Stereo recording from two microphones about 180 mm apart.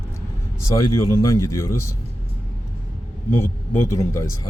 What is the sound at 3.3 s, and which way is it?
A man's voice, 15° left (ahead or behind).